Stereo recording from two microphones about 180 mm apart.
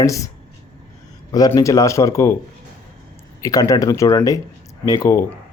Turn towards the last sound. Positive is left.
turn(degrees=15)  # may be behind; listen again after turning